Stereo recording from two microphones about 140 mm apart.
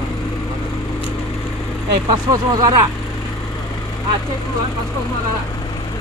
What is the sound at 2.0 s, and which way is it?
Speech, 30° right (ahead or behind).